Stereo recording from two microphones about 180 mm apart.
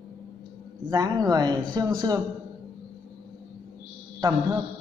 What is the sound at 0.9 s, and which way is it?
Speech, 20° right (ahead or behind).